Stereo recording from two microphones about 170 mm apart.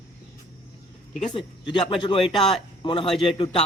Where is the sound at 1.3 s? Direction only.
30° left (ahead or behind).